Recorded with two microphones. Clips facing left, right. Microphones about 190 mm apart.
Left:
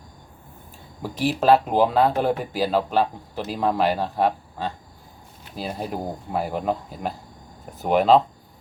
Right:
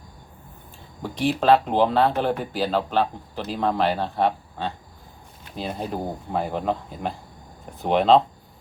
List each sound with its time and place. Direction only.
1.0 s speech: 5° left (ahead or behind)